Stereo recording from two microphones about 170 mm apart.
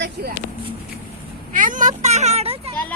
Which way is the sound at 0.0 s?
75° right (ahead or behind).